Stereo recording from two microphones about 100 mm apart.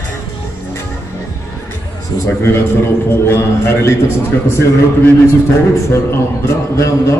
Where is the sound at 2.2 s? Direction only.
25° left (ahead or behind).